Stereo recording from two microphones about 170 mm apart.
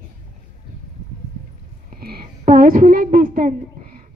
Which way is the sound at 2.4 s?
55° right (ahead or behind).